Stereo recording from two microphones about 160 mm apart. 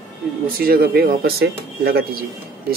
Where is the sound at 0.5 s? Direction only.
70° right (ahead or behind).